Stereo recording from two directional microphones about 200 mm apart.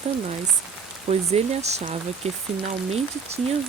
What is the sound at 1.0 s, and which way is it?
A woman's voice, 30° right (ahead or behind).